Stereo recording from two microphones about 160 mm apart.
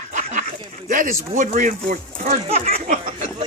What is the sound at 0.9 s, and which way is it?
Speech, 55° right (ahead or behind).